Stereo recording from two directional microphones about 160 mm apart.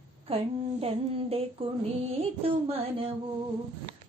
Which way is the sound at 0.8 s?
40° right (ahead or behind).